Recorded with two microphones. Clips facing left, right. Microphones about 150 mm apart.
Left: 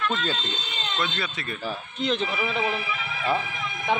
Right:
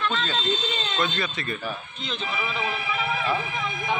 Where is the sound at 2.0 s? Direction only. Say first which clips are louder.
Left 8 dB; 70° left (ahead or behind).